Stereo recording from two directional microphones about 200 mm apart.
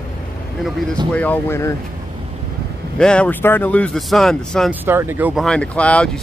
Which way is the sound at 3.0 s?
5° left (ahead or behind).